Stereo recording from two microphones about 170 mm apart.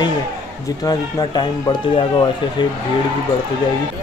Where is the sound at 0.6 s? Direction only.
20° left (ahead or behind).